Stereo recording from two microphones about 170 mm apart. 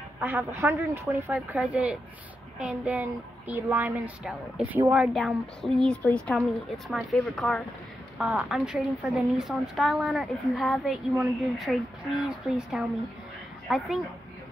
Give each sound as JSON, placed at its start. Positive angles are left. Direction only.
{"t": 0.2, "sound": "a woman's voice", "side_deg": -10}